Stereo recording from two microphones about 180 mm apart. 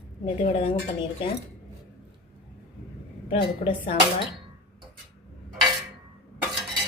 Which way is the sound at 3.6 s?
45° left (ahead or behind).